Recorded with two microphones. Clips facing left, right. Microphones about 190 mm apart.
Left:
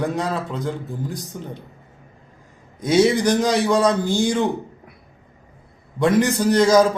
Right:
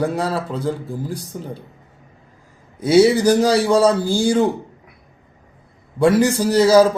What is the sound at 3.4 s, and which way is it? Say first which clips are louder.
Speech: right 4 dB; 35° right (ahead or behind).